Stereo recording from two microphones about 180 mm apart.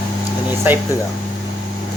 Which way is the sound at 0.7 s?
10° right (ahead or behind).